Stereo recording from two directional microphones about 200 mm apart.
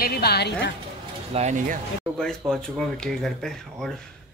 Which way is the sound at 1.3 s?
40° right (ahead or behind).